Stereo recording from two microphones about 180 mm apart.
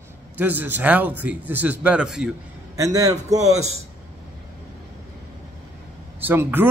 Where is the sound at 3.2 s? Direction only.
40° right (ahead or behind).